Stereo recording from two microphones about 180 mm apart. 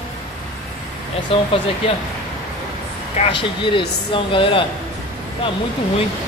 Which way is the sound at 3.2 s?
30° left (ahead or behind).